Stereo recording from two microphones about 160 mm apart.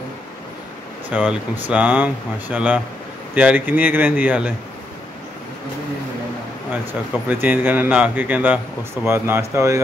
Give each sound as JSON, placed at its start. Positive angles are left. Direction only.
{"t": 1.1, "sound": "speech", "side_deg": -10}
{"t": 6.9, "sound": "speech", "side_deg": -10}